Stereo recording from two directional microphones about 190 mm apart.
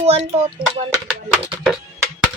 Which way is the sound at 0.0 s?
35° right (ahead or behind).